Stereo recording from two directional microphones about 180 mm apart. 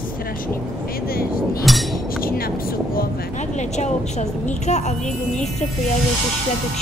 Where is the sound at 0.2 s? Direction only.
55° left (ahead or behind).